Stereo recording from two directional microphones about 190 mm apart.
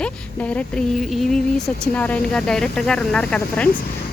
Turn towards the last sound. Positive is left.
turn(degrees=5)  # may be behind; listen again after turning